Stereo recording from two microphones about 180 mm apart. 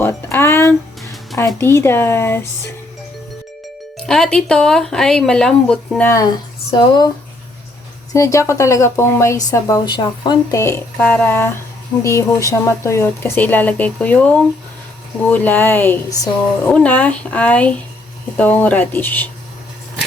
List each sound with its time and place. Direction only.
0.0 s music: 10° left (ahead or behind)
1.4 s speech: 15° left (ahead or behind)
3.9 s speech: 5° left (ahead or behind); by 7.1 s 25° left (ahead or behind)
8.1 s speech: 15° left (ahead or behind)